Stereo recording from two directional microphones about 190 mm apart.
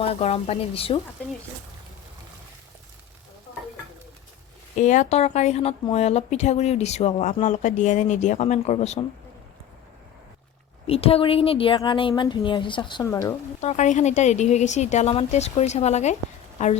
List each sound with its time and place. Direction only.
0.0 s speech: 30° left (ahead or behind)
4.8 s speech: 40° left (ahead or behind)
10.8 s a woman's voice: 30° left (ahead or behind)
13.6 s speech: 35° left (ahead or behind)